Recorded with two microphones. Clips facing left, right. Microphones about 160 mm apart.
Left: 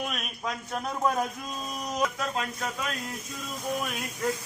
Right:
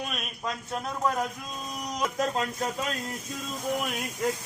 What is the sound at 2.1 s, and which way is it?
Speech, 35° right (ahead or behind).